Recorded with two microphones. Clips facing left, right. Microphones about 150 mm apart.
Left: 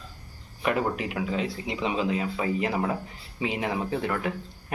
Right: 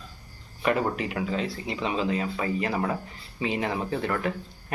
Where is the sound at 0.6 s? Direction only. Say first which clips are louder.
Right 1 dB; 5° left (ahead or behind).